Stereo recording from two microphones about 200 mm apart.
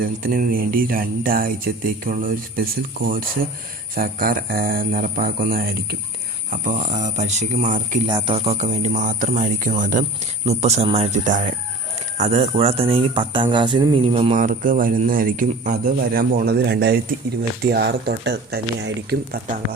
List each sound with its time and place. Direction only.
0.0 s speech: 45° right (ahead or behind)
3.9 s speech: 45° right (ahead or behind)
6.5 s speech: 40° right (ahead or behind)
8.0 s speech: 25° right (ahead or behind); by 19.4 s 60° right (ahead or behind)